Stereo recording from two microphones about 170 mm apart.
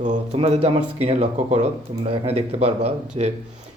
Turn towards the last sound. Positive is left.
turn(degrees=-40)  # may be behind; listen again after turning